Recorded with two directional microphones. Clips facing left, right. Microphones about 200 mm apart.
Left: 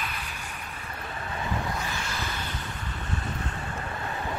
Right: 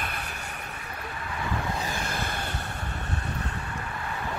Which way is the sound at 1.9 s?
55° right (ahead or behind).